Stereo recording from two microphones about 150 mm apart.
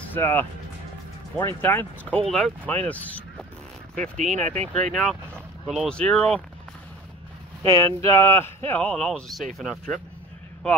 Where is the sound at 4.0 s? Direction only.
55° right (ahead or behind).